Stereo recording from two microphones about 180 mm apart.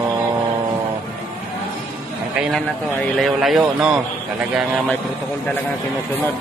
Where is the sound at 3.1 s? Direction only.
Centre (ahead or behind).